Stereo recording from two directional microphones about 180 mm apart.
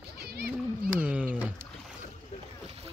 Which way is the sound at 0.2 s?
65° right (ahead or behind).